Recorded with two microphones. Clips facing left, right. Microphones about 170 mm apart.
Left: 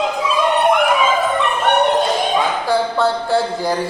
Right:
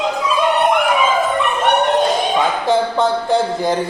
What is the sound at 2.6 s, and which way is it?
Speech, 20° right (ahead or behind).